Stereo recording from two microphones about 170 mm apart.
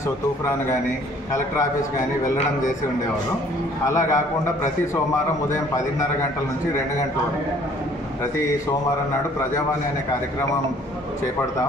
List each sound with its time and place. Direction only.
3.8 s a man's voice: 20° left (ahead or behind)